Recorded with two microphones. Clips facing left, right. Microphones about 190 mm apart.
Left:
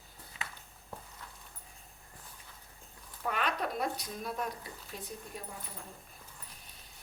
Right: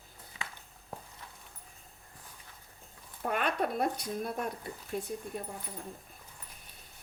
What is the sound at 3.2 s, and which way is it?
Speech, 50° right (ahead or behind).